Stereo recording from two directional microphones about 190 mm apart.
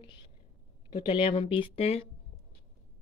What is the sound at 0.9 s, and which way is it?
Speech, 25° left (ahead or behind).